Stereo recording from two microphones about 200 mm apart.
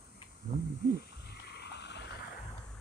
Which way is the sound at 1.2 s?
55° left (ahead or behind).